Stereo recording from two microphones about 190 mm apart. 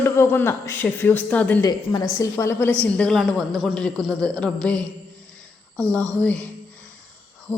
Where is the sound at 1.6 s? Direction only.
20° left (ahead or behind); by 4.9 s 5° left (ahead or behind).